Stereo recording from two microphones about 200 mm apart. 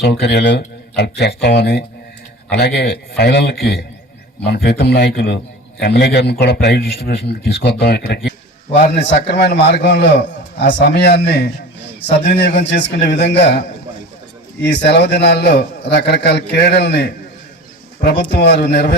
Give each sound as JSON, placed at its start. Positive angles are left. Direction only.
{"t": 0.0, "sound": "a man's voice", "side_deg": 55}
{"t": 14.6, "sound": "a man's voice", "side_deg": 55}